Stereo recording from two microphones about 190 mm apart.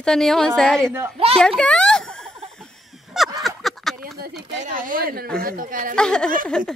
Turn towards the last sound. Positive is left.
turn(degrees=5)  # may be behind; listen again after turning